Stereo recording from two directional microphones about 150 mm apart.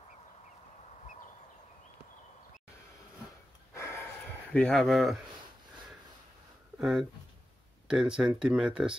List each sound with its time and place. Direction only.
3.7 s gasp: 20° left (ahead or behind)
4.6 s speech: 5° left (ahead or behind)
6.8 s speech: 5° right (ahead or behind)